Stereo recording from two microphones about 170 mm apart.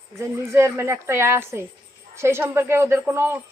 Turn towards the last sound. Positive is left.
turn(degrees=-15)  # may be behind; listen again after turning